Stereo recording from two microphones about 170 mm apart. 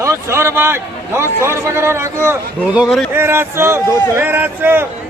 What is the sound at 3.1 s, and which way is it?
A man's voice, 15° right (ahead or behind).